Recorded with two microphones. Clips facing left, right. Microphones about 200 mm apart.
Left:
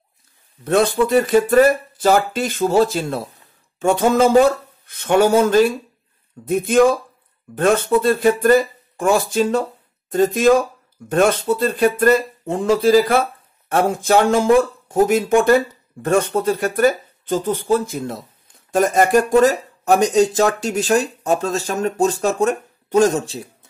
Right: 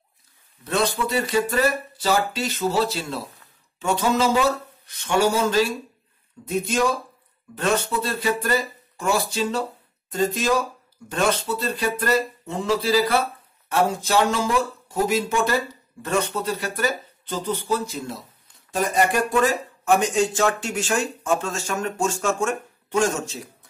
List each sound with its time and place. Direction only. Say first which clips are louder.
0.7 s speech: left 8 dB; 50° left (ahead or behind); by 23.5 s 30° left (ahead or behind)